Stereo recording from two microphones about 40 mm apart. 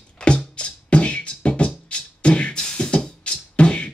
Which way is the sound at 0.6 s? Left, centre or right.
Left.